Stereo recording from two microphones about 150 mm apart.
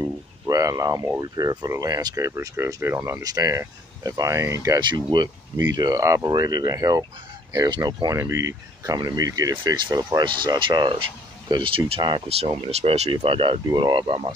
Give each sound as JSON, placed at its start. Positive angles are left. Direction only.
{"t": 0.0, "sound": "speech", "side_deg": -25}